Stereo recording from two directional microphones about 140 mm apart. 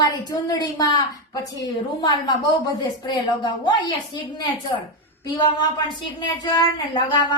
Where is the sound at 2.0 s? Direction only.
30° left (ahead or behind).